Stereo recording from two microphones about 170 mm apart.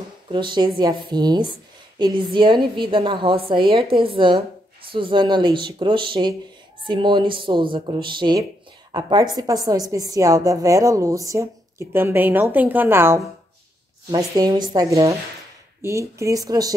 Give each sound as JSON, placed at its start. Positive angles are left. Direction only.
{"t": 0.3, "sound": "a woman's voice", "side_deg": -30}